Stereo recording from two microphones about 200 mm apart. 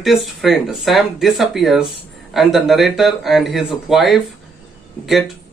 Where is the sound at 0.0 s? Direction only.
Centre (ahead or behind).